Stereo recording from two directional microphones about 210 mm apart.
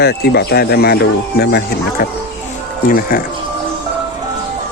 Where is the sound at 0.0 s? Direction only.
50° left (ahead or behind).